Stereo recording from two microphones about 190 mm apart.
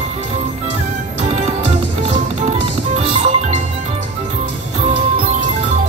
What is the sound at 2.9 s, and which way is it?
Music, 35° right (ahead or behind).